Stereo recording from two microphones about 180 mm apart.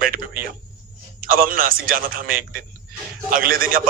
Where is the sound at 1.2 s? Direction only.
50° right (ahead or behind).